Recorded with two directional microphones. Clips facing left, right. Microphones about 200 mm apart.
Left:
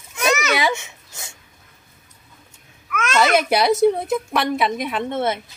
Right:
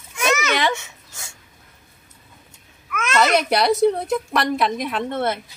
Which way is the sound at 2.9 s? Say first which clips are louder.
Left 1 dB; centre (ahead or behind).